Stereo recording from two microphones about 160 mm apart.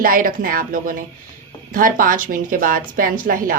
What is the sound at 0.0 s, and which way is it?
A woman's voice, 60° right (ahead or behind).